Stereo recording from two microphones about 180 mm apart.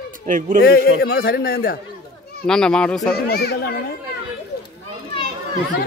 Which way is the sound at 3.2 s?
65° left (ahead or behind).